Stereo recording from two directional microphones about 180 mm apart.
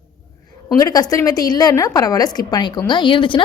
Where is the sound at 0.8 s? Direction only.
20° left (ahead or behind).